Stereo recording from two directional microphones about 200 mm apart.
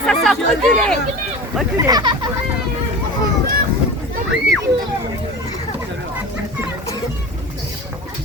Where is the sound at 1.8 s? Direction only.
20° right (ahead or behind).